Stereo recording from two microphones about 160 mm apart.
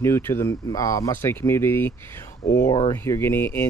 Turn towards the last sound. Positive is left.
turn(degrees=15)  # may be behind; listen again after turning